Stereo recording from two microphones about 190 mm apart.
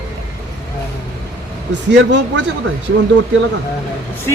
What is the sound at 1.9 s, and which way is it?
Speech, 70° right (ahead or behind).